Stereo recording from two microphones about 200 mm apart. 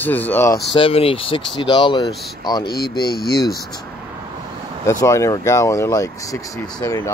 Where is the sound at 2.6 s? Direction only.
50° left (ahead or behind).